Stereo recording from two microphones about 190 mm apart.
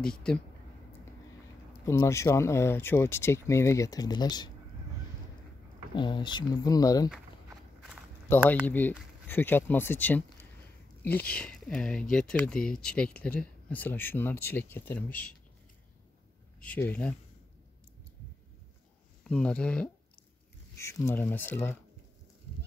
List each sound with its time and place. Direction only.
0.3 s speech: 5° left (ahead or behind)
1.9 s speech: 15° left (ahead or behind)
5.9 s speech: 25° left (ahead or behind)
8.3 s speech: 10° left (ahead or behind)
16.6 s speech: 10° left (ahead or behind)
19.2 s speech: 5° left (ahead or behind)